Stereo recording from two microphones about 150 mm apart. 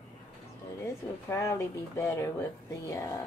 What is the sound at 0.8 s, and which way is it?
Speech, 20° left (ahead or behind).